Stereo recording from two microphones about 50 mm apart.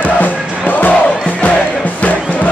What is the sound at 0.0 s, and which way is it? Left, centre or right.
Crowd, left.